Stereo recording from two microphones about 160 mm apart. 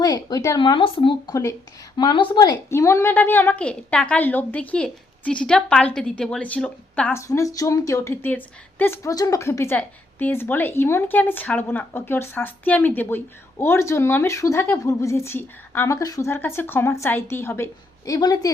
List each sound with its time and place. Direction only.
0.0 s speech: 25° left (ahead or behind); by 7.2 s 5° left (ahead or behind)
7.2 s speech: 20° left (ahead or behind)